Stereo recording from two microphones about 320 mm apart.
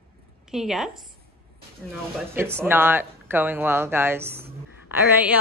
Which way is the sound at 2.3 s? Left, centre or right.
Centre.